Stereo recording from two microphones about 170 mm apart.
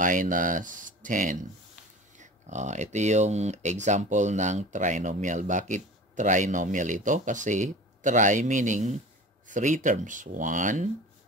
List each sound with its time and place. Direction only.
0.0 s speech: 50° right (ahead or behind)